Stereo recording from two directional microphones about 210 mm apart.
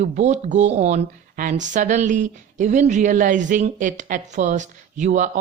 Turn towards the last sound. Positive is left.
turn(degrees=-35)  # may be behind; listen again after turning